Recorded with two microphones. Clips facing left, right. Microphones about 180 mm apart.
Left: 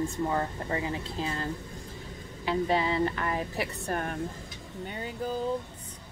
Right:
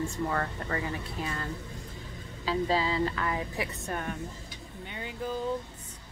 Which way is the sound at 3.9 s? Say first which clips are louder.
Left 4 dB; 45° left (ahead or behind).